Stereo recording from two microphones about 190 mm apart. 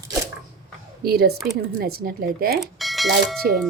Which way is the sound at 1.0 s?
55° right (ahead or behind).